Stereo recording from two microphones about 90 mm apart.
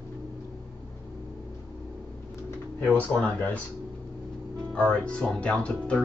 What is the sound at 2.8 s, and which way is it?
Speech, 15° left (ahead or behind).